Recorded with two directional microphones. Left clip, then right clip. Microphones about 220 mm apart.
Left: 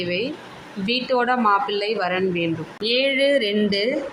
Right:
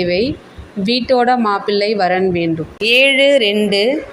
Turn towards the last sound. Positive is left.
turn(degrees=-20)  # may be behind; listen again after turning